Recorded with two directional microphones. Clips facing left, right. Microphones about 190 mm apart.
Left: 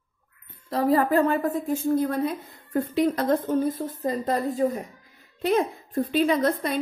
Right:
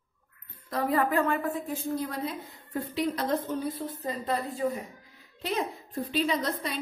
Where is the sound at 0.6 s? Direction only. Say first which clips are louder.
Left 5 dB; 30° left (ahead or behind).